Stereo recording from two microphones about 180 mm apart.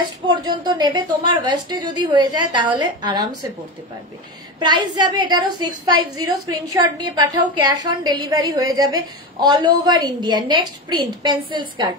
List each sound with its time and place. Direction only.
0.0 s a woman's voice: 25° right (ahead or behind)
4.6 s a woman's voice: 25° right (ahead or behind)